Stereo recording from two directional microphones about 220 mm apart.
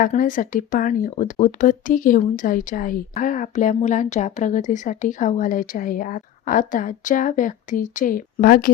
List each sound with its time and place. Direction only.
0.0 s speech: 40° left (ahead or behind)